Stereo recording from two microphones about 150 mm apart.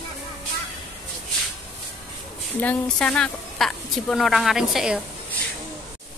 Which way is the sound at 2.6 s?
10° left (ahead or behind).